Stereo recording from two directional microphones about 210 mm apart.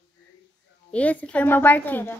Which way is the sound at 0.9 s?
5° left (ahead or behind).